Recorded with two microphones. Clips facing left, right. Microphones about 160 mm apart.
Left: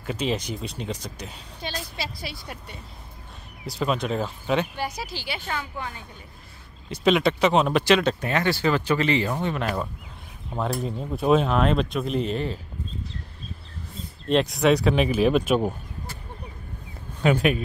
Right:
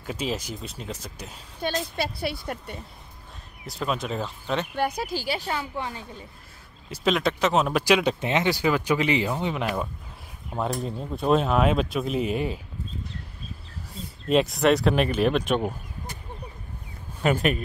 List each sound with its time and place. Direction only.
0.0 s speech: 5° right (ahead or behind)
1.6 s speech: 50° right (ahead or behind)
3.6 s speech: centre (ahead or behind)
4.7 s speech: 55° right (ahead or behind)
5.8 s a woman's voice: 30° right (ahead or behind)
6.9 s speech: centre (ahead or behind)
10.7 s speech: centre (ahead or behind)
14.3 s speech: centre (ahead or behind)
17.2 s speech: centre (ahead or behind)